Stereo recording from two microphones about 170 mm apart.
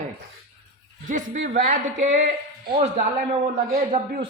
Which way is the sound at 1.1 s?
45° right (ahead or behind).